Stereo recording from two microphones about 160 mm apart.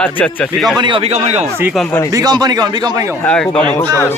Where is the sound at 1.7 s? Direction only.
5° left (ahead or behind).